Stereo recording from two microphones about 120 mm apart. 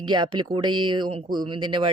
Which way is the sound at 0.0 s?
40° right (ahead or behind).